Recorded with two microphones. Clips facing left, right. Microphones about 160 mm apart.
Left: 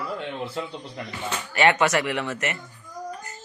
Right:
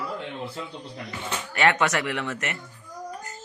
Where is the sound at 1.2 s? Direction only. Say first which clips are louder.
Left 2 dB; 5° left (ahead or behind).